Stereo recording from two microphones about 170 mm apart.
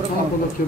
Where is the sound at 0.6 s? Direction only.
55° left (ahead or behind).